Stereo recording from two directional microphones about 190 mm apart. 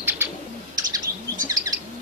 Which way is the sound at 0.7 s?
20° right (ahead or behind).